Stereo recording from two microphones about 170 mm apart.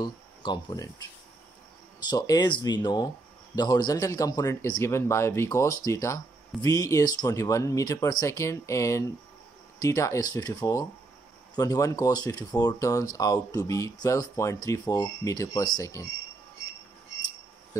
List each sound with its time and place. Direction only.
0.0 s speech: 25° left (ahead or behind)
2.0 s a man's voice: 20° left (ahead or behind)